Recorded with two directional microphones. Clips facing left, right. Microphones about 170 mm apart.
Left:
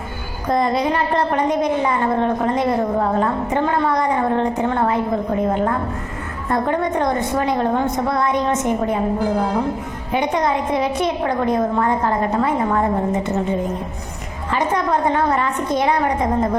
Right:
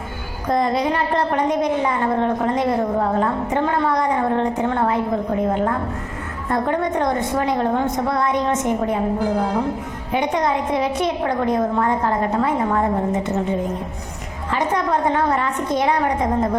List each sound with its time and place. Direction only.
0.4 s a woman's voice: 20° left (ahead or behind)
14.5 s a woman's voice: 20° left (ahead or behind)